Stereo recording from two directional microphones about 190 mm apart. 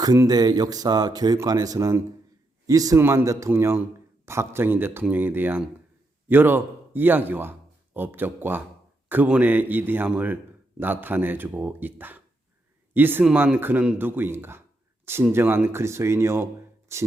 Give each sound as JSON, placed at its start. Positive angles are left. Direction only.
{"t": 0.0, "sound": "speech", "side_deg": -20}